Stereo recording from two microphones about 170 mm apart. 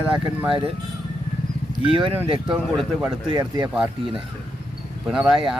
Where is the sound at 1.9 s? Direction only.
30° right (ahead or behind).